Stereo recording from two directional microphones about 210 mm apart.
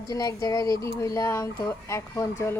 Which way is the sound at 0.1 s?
15° left (ahead or behind).